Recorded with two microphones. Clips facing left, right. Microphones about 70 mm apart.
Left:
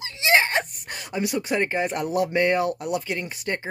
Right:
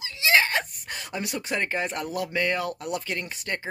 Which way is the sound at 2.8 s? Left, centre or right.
Centre.